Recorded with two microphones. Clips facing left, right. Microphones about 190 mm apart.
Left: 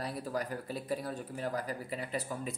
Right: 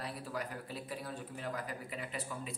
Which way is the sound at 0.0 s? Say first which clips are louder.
Left 5 dB; 40° left (ahead or behind).